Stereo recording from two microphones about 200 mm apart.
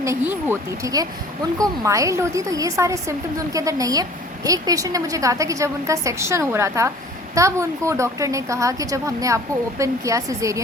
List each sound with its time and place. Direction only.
0.0 s a woman's voice: 15° right (ahead or behind)